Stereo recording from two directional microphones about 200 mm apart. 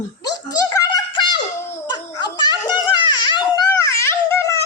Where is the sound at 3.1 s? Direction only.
20° left (ahead or behind).